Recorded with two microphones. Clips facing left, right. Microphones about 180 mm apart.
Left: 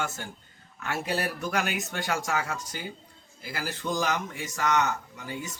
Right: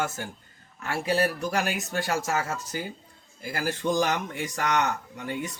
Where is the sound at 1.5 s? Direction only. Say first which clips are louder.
Right 2 dB; 35° right (ahead or behind).